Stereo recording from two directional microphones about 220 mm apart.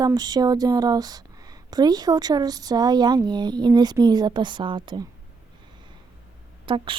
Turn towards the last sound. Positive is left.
turn(degrees=-20)  # may be behind; listen again after turning